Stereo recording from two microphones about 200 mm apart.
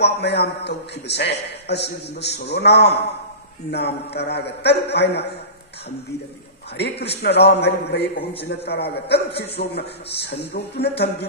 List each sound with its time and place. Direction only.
0.0 s a man's voice: 55° left (ahead or behind)
7.2 s a man's voice: 55° left (ahead or behind)